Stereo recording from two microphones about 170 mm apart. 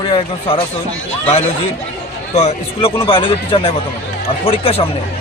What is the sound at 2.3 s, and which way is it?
Speech, 40° left (ahead or behind).